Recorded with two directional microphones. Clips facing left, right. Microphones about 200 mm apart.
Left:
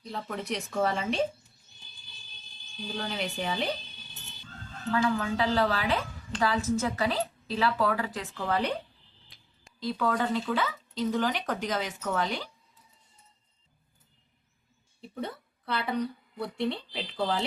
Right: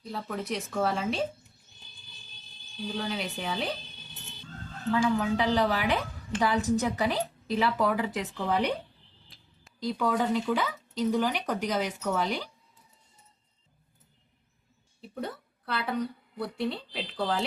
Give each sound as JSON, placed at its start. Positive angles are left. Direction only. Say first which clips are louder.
{"t": 0.0, "sound": "speech", "louder": "right 1 dB", "side_deg": 0}
{"t": 2.8, "sound": "speech", "louder": "right 1 dB", "side_deg": 0}
{"t": 4.9, "sound": "a woman's voice", "louder": "right 2 dB", "side_deg": -20}
{"t": 15.0, "sound": "a woman's voice", "louder": "even", "side_deg": 0}